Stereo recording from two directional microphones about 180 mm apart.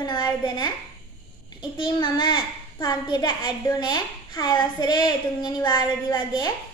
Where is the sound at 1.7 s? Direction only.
25° left (ahead or behind).